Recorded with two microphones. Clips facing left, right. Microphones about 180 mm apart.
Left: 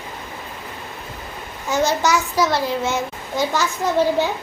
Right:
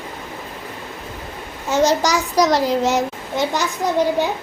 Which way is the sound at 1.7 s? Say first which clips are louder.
Right 2 dB; 30° right (ahead or behind).